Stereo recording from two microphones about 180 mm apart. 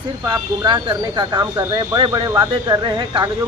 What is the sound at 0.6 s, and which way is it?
Speech, 25° right (ahead or behind).